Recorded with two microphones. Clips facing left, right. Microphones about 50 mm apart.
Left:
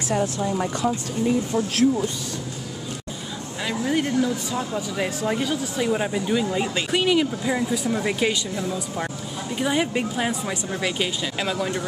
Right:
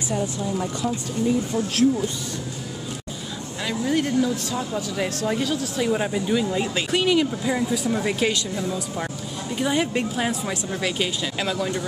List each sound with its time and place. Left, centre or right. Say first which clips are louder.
0.1 s speech: left 3 dB; left
3.6 s speech: even; centre
11.5 s speech: even; centre